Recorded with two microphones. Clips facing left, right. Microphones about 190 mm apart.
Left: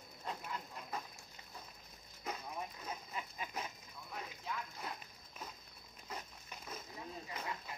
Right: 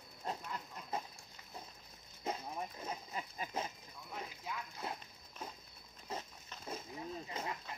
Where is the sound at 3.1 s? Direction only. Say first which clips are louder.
Right 2 dB; 40° right (ahead or behind).